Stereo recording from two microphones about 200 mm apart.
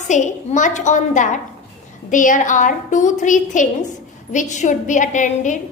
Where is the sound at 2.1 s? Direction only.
40° left (ahead or behind).